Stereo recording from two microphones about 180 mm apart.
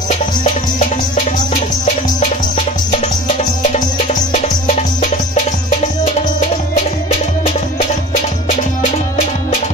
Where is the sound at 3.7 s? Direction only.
45° left (ahead or behind).